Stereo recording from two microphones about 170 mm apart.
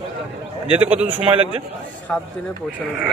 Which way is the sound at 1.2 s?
30° right (ahead or behind).